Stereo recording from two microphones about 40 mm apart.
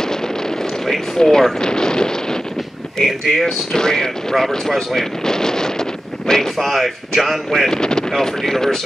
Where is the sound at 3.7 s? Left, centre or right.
Centre.